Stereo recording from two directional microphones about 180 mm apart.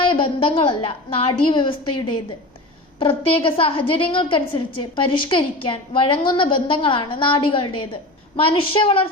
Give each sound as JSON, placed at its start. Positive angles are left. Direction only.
{"t": 0.0, "sound": "a woman's voice", "side_deg": 30}
{"t": 3.0, "sound": "a woman's voice", "side_deg": 30}